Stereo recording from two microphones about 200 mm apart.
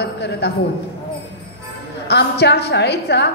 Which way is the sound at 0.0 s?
55° left (ahead or behind).